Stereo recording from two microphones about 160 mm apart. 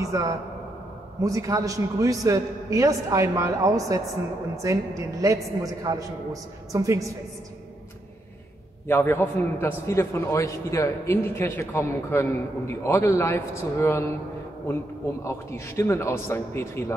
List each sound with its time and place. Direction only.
0.0 s a man's voice: 20° right (ahead or behind)
5.2 s a man's voice: 20° right (ahead or behind)
8.8 s a man's voice: 15° left (ahead or behind)
15.2 s a man's voice: 15° left (ahead or behind)